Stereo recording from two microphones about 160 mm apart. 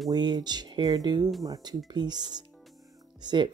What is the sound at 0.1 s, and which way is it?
Speech, 25° right (ahead or behind).